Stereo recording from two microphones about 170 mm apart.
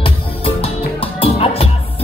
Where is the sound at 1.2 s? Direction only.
35° left (ahead or behind).